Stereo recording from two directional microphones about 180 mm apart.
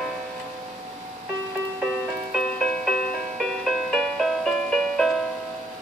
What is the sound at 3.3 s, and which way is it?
Music, centre (ahead or behind).